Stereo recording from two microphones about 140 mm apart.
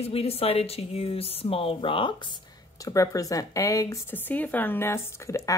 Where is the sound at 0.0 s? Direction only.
45° left (ahead or behind).